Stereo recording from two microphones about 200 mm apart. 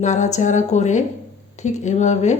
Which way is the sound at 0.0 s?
35° left (ahead or behind).